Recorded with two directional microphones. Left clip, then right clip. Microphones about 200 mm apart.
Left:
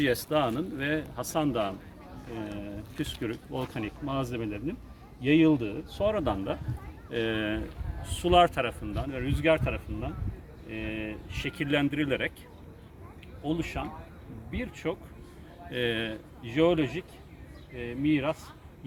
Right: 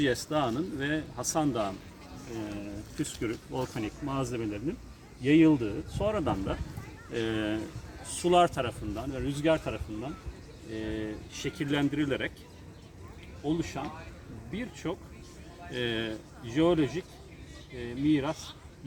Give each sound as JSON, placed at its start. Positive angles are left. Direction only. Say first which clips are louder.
{"t": 0.0, "sound": "speech", "louder": "left 2 dB", "side_deg": 30}
{"t": 3.2, "sound": "speech", "louder": "right 3 dB", "side_deg": 25}
{"t": 9.6, "sound": "speech", "louder": "left 2 dB", "side_deg": 5}
{"t": 10.8, "sound": "speech", "louder": "even", "side_deg": 30}
{"t": 13.4, "sound": "speech", "louder": "even", "side_deg": 35}